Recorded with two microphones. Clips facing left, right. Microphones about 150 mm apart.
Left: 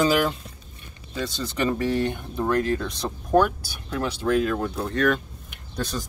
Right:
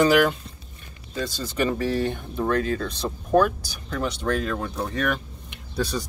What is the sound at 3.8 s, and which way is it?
Speech, 5° left (ahead or behind).